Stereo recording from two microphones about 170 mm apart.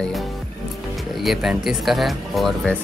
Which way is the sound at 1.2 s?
Centre (ahead or behind).